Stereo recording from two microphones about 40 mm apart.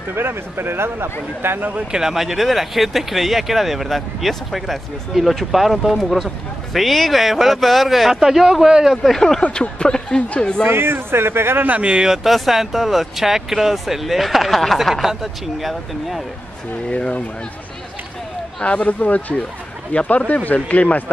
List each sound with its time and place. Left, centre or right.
0.1 s speech: right
1.9 s speech: centre
2.1 s speech: centre
9.4 s speech: left
10.6 s speech: right
11.8 s speech: right
12.1 s speech: centre
18.6 s speech: left